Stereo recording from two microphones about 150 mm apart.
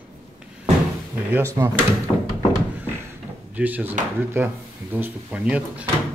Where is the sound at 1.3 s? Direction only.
15° right (ahead or behind).